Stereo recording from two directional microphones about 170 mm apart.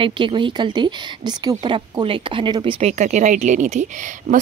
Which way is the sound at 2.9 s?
45° right (ahead or behind).